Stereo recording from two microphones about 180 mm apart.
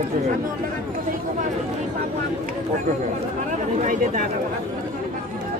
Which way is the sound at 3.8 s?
45° right (ahead or behind).